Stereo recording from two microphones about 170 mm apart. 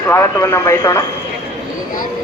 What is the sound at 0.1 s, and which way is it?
Speech, 15° left (ahead or behind).